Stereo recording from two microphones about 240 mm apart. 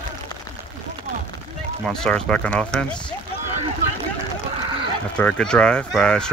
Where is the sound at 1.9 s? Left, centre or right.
Centre.